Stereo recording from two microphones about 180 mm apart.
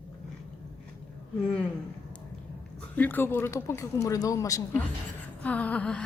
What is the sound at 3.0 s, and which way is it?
Speech, 10° left (ahead or behind).